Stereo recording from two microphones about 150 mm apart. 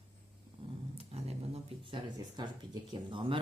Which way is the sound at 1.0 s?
45° right (ahead or behind).